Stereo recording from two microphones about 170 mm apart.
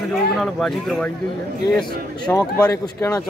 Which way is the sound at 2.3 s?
20° left (ahead or behind).